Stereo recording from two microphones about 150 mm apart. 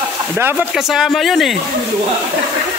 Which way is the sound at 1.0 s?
Centre (ahead or behind).